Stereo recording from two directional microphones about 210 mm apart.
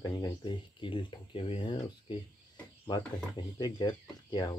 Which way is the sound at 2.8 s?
20° left (ahead or behind).